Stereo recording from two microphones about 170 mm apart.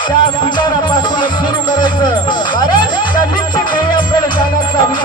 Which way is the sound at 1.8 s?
25° left (ahead or behind).